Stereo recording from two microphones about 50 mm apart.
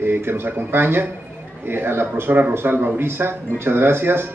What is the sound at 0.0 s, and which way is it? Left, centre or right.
A man's voice, right.